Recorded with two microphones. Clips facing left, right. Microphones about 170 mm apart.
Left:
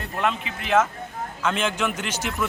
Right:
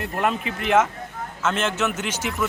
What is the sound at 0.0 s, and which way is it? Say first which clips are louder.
Speech: right 2 dB; 45° right (ahead or behind).